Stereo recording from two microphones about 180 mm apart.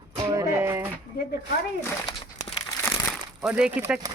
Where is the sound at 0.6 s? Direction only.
15° right (ahead or behind).